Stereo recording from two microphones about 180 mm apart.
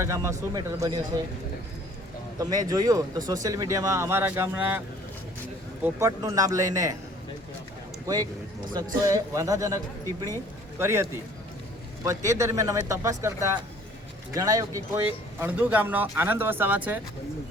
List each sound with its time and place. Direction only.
0.0 s speech: 15° right (ahead or behind)
2.4 s speech: 20° right (ahead or behind)
5.8 s speech: 15° right (ahead or behind)
8.0 s a man's voice: 20° right (ahead or behind)
12.0 s speech: 15° right (ahead or behind)